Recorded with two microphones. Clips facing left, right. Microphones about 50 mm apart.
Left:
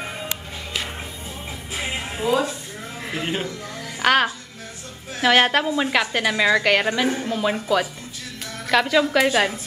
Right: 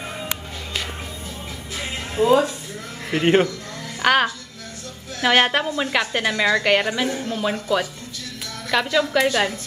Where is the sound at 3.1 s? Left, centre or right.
Right.